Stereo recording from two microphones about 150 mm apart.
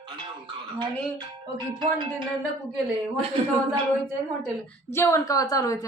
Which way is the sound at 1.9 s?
30° right (ahead or behind).